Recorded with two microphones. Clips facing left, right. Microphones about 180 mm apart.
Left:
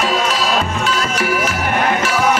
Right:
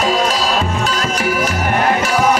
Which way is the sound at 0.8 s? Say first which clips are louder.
Right 1 dB; 40° right (ahead or behind).